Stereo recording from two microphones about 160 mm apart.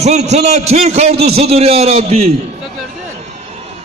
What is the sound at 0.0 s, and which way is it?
A man's voice, 45° right (ahead or behind).